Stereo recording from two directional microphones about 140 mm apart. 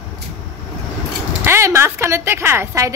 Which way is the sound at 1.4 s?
20° right (ahead or behind).